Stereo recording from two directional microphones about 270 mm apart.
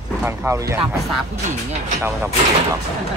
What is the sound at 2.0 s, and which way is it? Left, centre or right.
Speech, centre.